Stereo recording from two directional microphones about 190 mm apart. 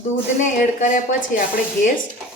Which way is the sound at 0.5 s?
45° left (ahead or behind).